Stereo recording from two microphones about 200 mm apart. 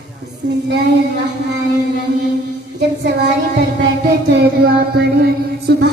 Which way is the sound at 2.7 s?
55° right (ahead or behind).